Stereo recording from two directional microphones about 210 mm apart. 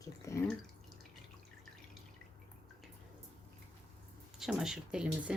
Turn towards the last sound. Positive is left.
turn(degrees=-5)  # may be behind; listen again after turning